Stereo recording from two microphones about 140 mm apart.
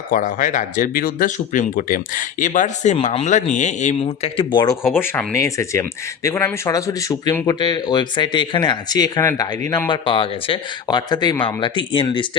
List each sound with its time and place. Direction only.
0.1 s speech: 70° left (ahead or behind); by 4.8 s 30° left (ahead or behind)
4.9 s speech: 15° left (ahead or behind)
9.9 s speech: 40° left (ahead or behind)